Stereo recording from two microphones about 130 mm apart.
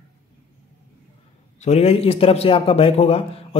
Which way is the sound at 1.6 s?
55° left (ahead or behind).